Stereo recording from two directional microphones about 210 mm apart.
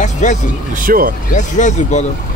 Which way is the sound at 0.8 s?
45° right (ahead or behind).